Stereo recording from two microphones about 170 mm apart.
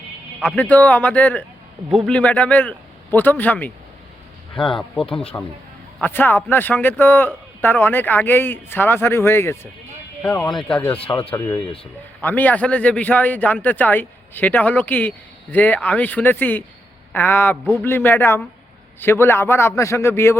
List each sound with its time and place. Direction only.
0.4 s a man's voice: 10° left (ahead or behind)
4.5 s speech: 30° left (ahead or behind)
4.8 s a man's voice: 5° left (ahead or behind)
10.6 s a man's voice: 5° left (ahead or behind)
11.0 s a man's voice: 20° left (ahead or behind)